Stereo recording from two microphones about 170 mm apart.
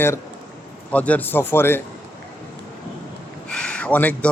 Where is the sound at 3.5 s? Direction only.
5° left (ahead or behind).